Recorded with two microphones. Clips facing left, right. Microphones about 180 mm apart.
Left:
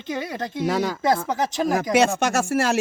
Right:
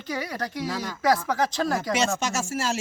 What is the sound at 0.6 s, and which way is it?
Speech, 80° left.